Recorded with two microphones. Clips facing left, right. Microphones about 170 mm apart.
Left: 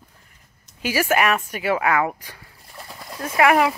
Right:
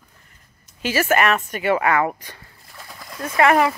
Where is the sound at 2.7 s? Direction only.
30° left (ahead or behind).